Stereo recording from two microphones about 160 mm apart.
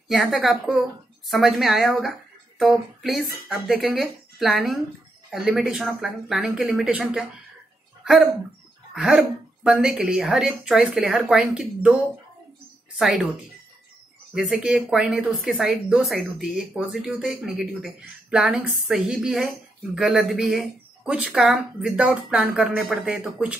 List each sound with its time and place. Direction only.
0.1 s speech: centre (ahead or behind)
13.0 s speech: centre (ahead or behind)
14.3 s speech: 5° right (ahead or behind)